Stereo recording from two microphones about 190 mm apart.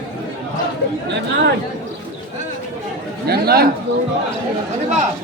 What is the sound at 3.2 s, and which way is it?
Speech, 55° right (ahead or behind).